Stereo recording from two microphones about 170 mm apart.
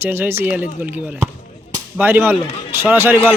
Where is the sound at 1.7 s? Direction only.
10° right (ahead or behind).